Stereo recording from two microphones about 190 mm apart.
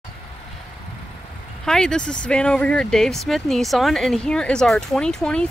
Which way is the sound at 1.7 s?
5° left (ahead or behind).